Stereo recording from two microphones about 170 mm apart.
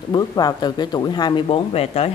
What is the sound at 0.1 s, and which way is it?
Speech, 25° left (ahead or behind).